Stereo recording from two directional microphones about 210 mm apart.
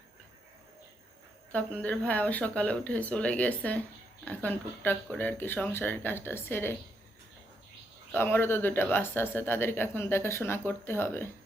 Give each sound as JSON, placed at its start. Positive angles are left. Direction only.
{"t": 1.5, "sound": "speech", "side_deg": 5}
{"t": 8.1, "sound": "speech", "side_deg": 10}